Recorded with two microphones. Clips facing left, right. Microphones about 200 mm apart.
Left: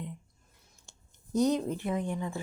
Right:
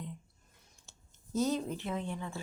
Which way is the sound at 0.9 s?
15° left (ahead or behind).